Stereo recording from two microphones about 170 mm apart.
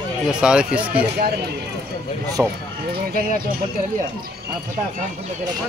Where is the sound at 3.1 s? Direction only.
55° right (ahead or behind).